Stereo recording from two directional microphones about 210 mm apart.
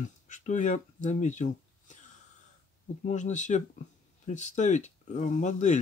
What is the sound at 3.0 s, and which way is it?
Speech, 35° left (ahead or behind).